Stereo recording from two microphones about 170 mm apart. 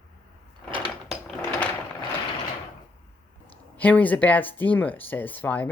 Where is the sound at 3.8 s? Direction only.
10° left (ahead or behind).